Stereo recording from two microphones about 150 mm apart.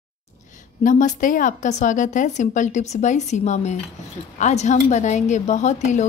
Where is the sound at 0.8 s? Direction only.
60° left (ahead or behind).